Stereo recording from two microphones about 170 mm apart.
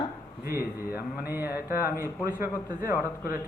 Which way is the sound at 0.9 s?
10° right (ahead or behind).